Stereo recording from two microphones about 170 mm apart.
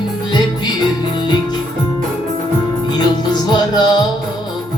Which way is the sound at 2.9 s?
25° left (ahead or behind).